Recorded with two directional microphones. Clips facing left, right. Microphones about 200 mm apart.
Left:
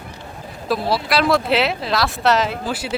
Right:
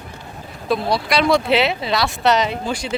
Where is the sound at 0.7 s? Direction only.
5° left (ahead or behind).